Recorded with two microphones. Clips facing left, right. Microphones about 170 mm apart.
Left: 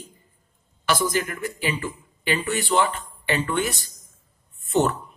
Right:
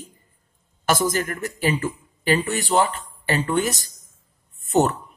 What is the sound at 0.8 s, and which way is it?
Speech, 45° right (ahead or behind).